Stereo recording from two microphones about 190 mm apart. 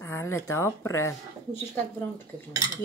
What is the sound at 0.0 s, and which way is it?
Speech, 15° left (ahead or behind).